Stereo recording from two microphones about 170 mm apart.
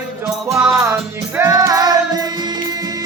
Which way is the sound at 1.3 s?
15° right (ahead or behind).